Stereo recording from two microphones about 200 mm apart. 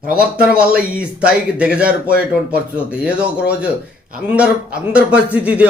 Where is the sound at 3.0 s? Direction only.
5° right (ahead or behind).